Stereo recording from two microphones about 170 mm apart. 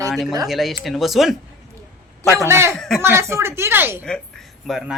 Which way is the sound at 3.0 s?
15° right (ahead or behind).